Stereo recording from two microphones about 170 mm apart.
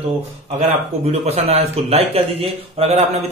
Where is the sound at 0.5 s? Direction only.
40° right (ahead or behind).